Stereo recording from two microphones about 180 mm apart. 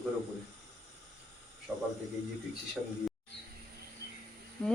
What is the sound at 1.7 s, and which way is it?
Speech, 5° left (ahead or behind).